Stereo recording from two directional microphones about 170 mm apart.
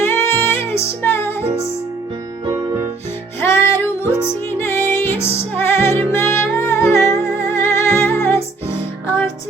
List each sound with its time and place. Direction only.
0.0 s music: 15° left (ahead or behind)
2.4 s music: 25° right (ahead or behind)
3.4 s music: 15° left (ahead or behind)